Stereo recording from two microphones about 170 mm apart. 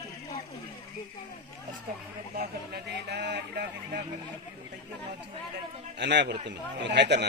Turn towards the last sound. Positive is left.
turn(degrees=-90)